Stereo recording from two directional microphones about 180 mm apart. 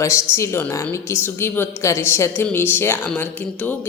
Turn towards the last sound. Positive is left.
turn(degrees=10)  # may be behind; listen again after turning